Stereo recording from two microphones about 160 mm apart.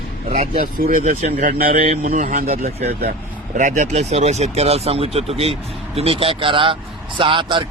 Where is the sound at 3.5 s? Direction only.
50° right (ahead or behind).